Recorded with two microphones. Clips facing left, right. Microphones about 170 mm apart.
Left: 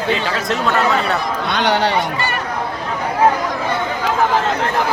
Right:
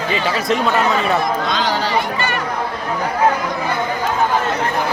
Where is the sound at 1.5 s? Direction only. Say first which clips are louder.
Left 3 dB; 65° left (ahead or behind).